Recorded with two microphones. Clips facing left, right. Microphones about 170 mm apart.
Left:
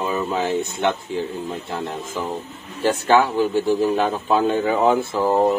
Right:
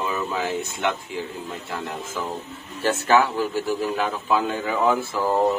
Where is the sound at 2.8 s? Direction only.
15° left (ahead or behind).